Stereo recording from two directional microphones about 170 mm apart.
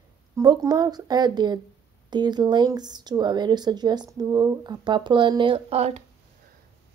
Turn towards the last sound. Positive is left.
turn(degrees=-40)  # may be behind; listen again after turning